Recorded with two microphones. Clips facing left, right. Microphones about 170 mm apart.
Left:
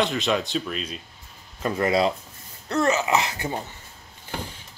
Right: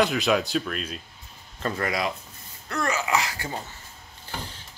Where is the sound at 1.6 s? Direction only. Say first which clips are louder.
Left 6 dB; 20° left (ahead or behind).